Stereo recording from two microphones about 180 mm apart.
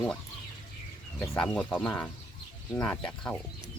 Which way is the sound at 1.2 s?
5° left (ahead or behind).